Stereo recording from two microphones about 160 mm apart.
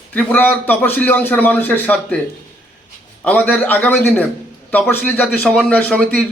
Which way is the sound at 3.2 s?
10° left (ahead or behind).